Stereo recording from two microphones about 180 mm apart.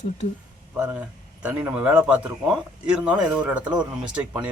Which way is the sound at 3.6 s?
25° right (ahead or behind).